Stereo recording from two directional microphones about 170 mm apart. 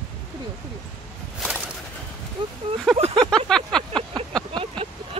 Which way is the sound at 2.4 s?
30° right (ahead or behind).